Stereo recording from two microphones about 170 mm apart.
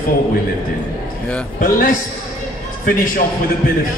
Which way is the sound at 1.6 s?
55° left (ahead or behind).